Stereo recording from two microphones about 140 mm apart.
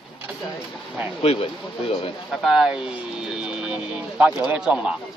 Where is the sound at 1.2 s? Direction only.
45° left (ahead or behind).